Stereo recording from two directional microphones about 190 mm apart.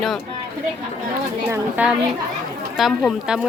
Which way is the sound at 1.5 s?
10° right (ahead or behind).